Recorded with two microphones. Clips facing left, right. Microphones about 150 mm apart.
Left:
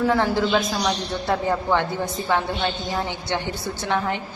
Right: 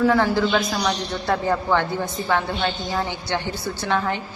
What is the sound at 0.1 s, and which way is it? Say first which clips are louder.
A woman's voice: right 1 dB; 20° left (ahead or behind).